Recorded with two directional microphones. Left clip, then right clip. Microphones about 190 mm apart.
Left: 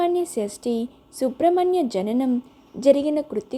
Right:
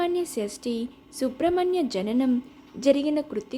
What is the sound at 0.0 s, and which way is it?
A woman's voice, 15° left (ahead or behind).